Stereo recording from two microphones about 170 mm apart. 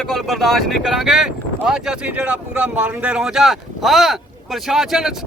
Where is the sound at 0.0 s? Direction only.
Centre (ahead or behind).